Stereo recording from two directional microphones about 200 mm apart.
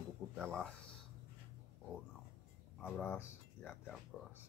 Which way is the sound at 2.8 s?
5° left (ahead or behind).